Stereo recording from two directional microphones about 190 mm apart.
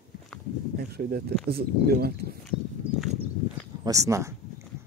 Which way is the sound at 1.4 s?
55° right (ahead or behind).